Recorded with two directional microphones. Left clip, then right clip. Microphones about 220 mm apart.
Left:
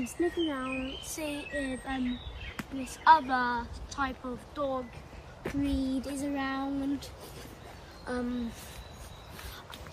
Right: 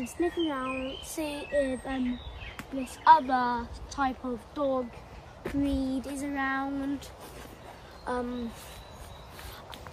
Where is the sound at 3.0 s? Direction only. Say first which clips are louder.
Right 2 dB; 45° right (ahead or behind).